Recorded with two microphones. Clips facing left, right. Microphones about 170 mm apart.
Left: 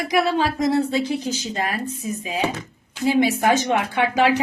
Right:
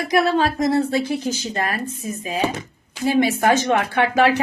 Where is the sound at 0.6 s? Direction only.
15° left (ahead or behind).